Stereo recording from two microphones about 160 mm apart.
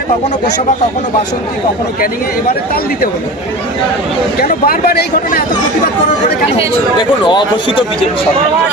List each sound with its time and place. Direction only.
4.6 s speech: 70° left (ahead or behind)
7.3 s a man's voice: 30° left (ahead or behind)